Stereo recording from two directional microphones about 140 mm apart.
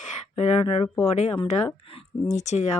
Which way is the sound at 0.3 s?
45° left (ahead or behind).